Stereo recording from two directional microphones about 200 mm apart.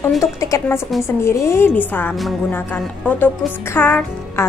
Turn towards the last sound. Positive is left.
turn(degrees=10)  # may be behind; listen again after turning